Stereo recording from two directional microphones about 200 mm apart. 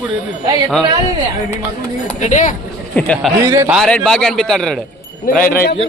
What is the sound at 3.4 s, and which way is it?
Speech, 15° right (ahead or behind).